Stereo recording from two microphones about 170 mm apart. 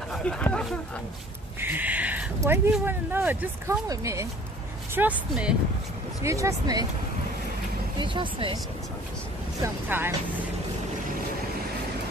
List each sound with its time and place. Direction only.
0.1 s speech: 5° left (ahead or behind)
1.6 s speech: 10° right (ahead or behind)
4.9 s speech: 10° right (ahead or behind)
6.2 s speech: 20° right (ahead or behind)
8.0 s speech: 30° right (ahead or behind)
9.8 s speech: 10° right (ahead or behind)